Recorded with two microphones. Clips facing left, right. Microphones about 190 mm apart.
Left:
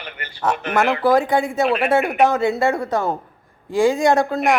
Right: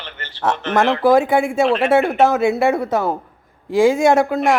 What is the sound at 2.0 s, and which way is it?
Speech, 10° left (ahead or behind).